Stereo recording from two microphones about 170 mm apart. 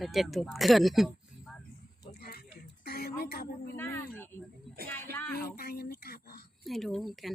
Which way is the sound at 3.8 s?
15° left (ahead or behind).